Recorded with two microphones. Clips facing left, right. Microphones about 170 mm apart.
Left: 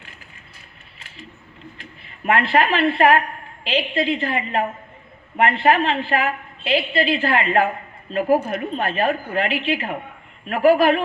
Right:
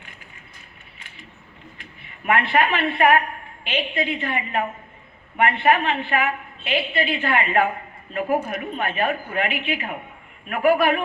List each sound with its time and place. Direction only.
1.8 s a woman's voice: 35° left (ahead or behind)